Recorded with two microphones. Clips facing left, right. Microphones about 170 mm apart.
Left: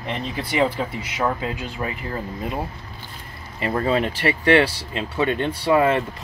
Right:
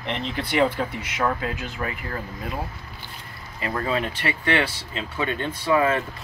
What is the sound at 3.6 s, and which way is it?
Speech, 30° left (ahead or behind).